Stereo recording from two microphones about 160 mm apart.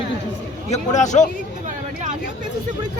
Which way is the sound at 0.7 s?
50° left (ahead or behind).